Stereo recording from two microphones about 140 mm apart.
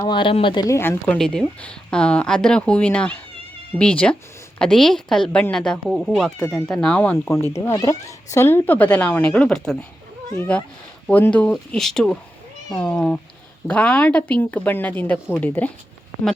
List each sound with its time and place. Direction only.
0.0 s speech: 35° left (ahead or behind)
0.7 s a woman's voice: 15° left (ahead or behind)